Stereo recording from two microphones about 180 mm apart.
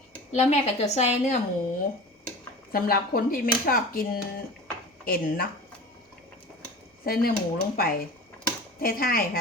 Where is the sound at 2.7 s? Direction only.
55° left (ahead or behind).